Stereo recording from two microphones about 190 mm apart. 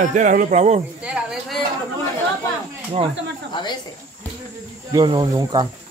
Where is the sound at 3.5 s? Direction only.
25° left (ahead or behind).